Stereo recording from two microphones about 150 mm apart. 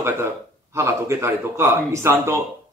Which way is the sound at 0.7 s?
20° right (ahead or behind).